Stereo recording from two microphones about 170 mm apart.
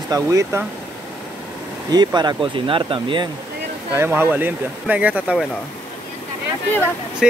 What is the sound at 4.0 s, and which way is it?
Speech, 10° right (ahead or behind).